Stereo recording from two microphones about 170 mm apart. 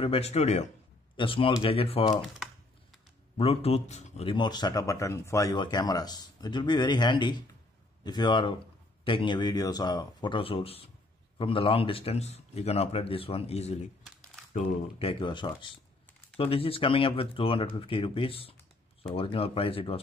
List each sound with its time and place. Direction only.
0.0 s a man's voice: 35° left (ahead or behind)
3.3 s a man's voice: 35° left (ahead or behind)
15.0 s a man's voice: 35° left (ahead or behind)